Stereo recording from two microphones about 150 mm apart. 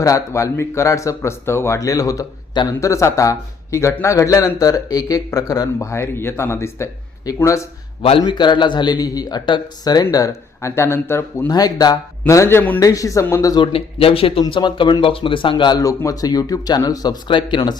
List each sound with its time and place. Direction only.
0.0 s a man's voice: 20° left (ahead or behind)
13.7 s speech: 40° left (ahead or behind)